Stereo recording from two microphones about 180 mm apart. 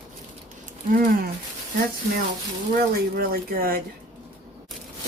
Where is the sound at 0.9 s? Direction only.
50° right (ahead or behind).